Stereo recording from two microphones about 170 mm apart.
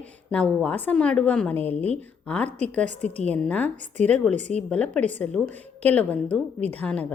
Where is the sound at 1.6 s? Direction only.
35° right (ahead or behind).